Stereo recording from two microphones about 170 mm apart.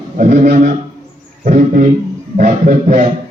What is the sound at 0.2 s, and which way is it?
Speech, 40° right (ahead or behind).